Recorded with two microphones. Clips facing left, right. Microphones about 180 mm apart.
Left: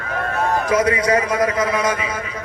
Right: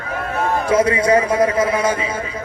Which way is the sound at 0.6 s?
30° right (ahead or behind).